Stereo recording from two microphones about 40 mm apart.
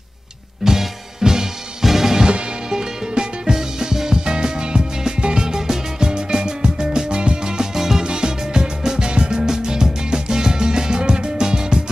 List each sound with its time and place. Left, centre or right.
0.7 s music: centre